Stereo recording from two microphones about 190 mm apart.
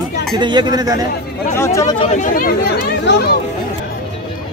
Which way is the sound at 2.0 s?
40° left (ahead or behind).